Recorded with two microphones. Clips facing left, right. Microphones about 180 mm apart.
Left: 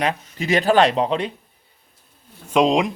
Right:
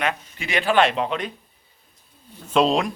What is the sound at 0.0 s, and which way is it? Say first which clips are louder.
Speech: left 3 dB; 35° left (ahead or behind).